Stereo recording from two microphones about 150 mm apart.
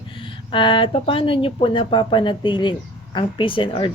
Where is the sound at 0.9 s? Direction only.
35° left (ahead or behind).